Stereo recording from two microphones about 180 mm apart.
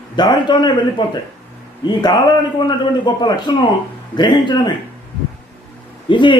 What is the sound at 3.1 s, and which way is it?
A man's voice, 25° left (ahead or behind).